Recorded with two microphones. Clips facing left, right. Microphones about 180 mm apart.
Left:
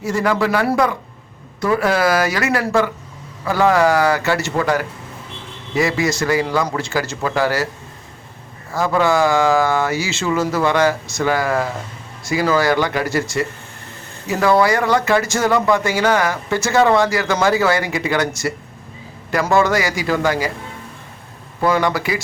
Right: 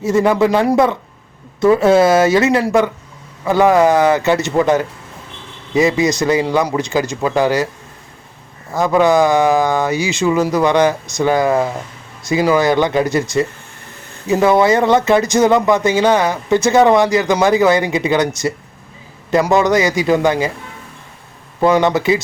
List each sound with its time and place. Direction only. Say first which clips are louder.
0.0 s speech: right 5 dB; 20° right (ahead or behind)
8.7 s speech: right 4 dB; 20° right (ahead or behind)
21.6 s speech: right 5 dB; 20° right (ahead or behind)